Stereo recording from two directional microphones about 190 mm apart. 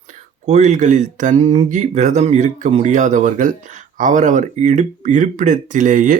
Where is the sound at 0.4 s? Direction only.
40° right (ahead or behind).